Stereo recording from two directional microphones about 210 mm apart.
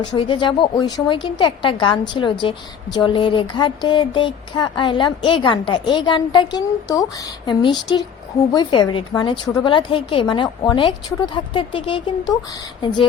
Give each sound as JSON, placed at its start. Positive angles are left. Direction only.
{"t": 0.0, "sound": "a woman's voice", "side_deg": 20}